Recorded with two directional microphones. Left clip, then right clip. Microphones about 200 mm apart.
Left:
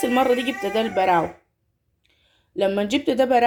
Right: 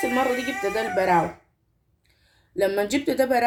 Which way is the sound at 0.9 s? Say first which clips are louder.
Left 1 dB; 35° left (ahead or behind).